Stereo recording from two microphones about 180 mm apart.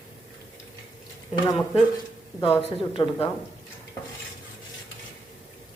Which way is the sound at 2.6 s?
30° left (ahead or behind).